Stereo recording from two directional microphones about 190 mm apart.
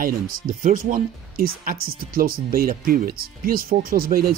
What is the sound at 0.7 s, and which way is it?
Speech, 45° right (ahead or behind).